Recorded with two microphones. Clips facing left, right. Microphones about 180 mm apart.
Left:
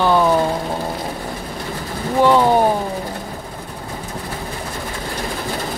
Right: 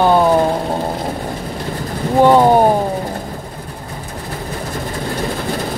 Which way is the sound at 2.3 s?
45° right (ahead or behind).